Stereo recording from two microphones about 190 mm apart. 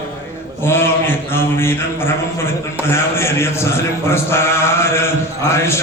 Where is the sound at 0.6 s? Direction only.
10° left (ahead or behind).